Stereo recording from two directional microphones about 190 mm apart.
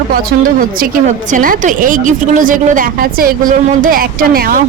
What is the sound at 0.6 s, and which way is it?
A woman's voice, 45° right (ahead or behind).